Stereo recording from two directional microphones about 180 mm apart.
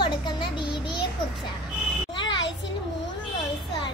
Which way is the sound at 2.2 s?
25° left (ahead or behind).